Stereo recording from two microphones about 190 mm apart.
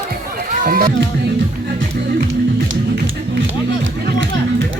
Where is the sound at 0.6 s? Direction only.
45° right (ahead or behind).